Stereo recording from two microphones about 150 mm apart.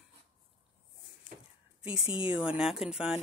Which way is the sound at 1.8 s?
40° left (ahead or behind).